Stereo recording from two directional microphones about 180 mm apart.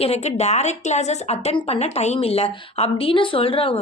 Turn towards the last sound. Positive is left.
turn(degrees=30)  # may be behind; listen again after turning